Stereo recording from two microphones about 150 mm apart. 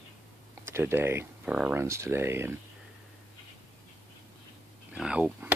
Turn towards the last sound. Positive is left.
turn(degrees=-10)  # may be behind; listen again after turning